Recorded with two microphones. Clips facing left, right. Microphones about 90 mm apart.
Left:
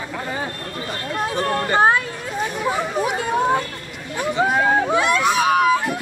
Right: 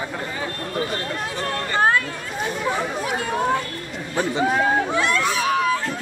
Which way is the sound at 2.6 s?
15° left (ahead or behind).